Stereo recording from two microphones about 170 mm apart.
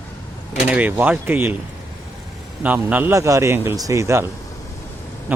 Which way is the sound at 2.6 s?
10° right (ahead or behind).